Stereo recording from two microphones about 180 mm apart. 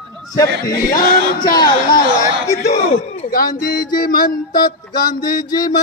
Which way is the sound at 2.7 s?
50° left (ahead or behind).